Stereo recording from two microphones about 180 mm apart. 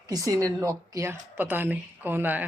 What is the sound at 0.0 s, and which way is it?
Speech, 20° right (ahead or behind).